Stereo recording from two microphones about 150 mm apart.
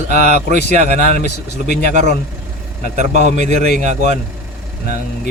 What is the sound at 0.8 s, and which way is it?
Speech, 90° left.